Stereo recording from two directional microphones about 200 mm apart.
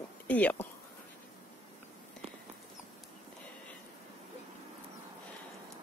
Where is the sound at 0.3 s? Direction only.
10° left (ahead or behind).